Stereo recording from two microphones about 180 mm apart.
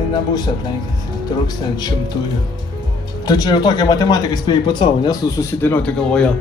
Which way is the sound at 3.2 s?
20° left (ahead or behind).